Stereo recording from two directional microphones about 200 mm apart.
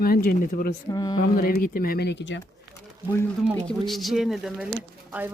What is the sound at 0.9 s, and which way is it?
Mantra, 20° left (ahead or behind).